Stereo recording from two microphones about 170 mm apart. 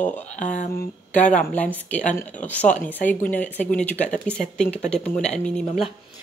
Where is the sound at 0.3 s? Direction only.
45° left (ahead or behind).